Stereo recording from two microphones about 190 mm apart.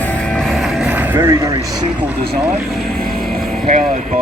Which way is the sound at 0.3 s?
Centre (ahead or behind).